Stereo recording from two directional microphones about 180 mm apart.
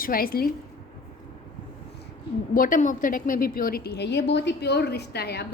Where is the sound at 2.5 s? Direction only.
50° left (ahead or behind).